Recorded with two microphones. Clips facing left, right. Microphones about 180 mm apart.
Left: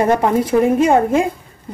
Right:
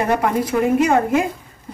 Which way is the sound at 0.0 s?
30° left (ahead or behind).